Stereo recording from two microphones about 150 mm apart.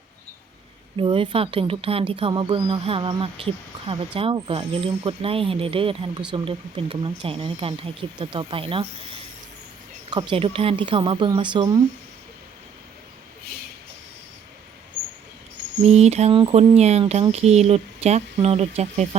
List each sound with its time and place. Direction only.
0.9 s speech: 35° right (ahead or behind)
10.1 s speech: 30° right (ahead or behind)
15.9 s speech: 45° right (ahead or behind)